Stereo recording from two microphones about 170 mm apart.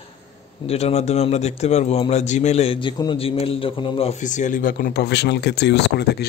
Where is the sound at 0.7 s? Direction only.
35° left (ahead or behind).